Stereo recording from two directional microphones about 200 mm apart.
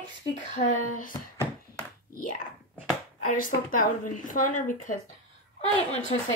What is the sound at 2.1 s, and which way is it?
Speech, 45° left (ahead or behind).